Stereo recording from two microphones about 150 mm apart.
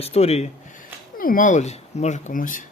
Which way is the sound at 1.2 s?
65° left (ahead or behind).